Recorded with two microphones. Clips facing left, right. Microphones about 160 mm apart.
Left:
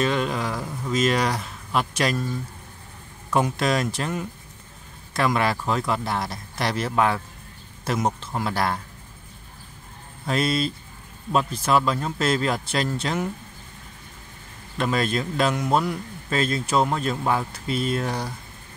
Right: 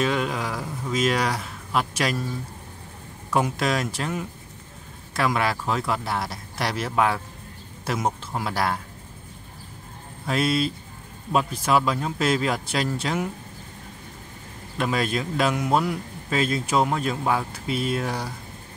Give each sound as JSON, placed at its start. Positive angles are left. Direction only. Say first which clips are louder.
{"t": 0.0, "sound": "a man's voice", "louder": "left 1 dB", "side_deg": -5}
{"t": 10.2, "sound": "a man's voice", "louder": "even", "side_deg": -5}
{"t": 14.8, "sound": "a man's voice", "louder": "left 1 dB", "side_deg": -5}